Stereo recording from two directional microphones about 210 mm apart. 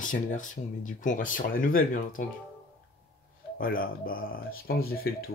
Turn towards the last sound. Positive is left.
turn(degrees=45)  # may be behind; listen again after turning